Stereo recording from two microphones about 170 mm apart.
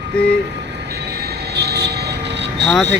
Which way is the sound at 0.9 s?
75° right (ahead or behind).